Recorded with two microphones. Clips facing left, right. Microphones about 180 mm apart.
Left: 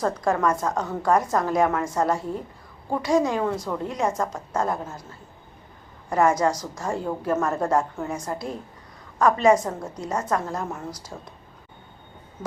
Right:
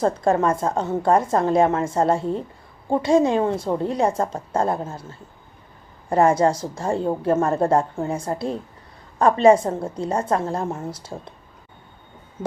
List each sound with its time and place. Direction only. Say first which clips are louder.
0.0 s a woman's voice: right 4 dB; 30° right (ahead or behind)